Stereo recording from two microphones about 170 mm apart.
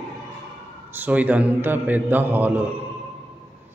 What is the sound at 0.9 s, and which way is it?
A man's voice, 10° right (ahead or behind).